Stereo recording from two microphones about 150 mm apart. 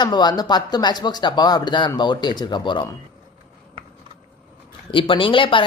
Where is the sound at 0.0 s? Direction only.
30° left (ahead or behind).